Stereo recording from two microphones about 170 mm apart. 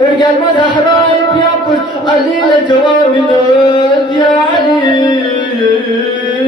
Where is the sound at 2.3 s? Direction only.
25° left (ahead or behind).